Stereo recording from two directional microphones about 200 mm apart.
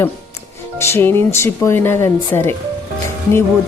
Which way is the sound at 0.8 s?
10° left (ahead or behind).